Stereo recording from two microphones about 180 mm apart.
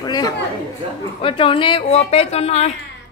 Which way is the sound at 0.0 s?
20° left (ahead or behind).